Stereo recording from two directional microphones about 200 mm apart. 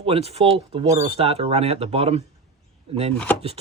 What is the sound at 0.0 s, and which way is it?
Speech, 30° right (ahead or behind).